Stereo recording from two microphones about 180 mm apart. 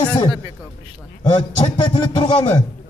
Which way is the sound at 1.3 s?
25° left (ahead or behind).